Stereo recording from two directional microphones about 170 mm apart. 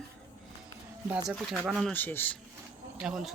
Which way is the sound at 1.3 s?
5° right (ahead or behind).